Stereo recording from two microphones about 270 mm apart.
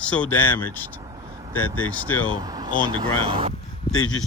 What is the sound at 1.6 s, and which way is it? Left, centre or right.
Speech, left.